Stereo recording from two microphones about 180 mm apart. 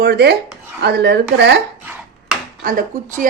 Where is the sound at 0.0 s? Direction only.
65° right (ahead or behind).